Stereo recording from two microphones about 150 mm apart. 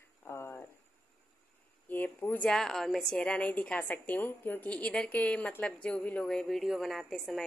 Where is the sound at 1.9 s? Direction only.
10° left (ahead or behind).